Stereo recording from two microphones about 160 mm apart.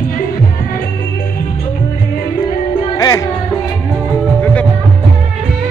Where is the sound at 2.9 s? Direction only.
25° left (ahead or behind).